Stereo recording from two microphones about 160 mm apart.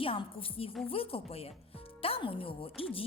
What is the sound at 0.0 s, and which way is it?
A woman's voice, 35° left (ahead or behind).